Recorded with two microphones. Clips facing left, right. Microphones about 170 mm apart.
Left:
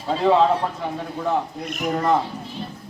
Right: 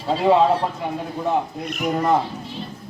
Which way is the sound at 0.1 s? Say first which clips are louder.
Right 1 dB; 5° right (ahead or behind).